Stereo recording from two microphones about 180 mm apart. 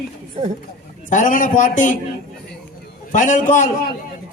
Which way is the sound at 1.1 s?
45° left (ahead or behind).